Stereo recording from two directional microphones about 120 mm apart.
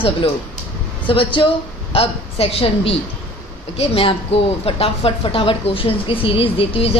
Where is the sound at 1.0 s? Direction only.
45° left (ahead or behind).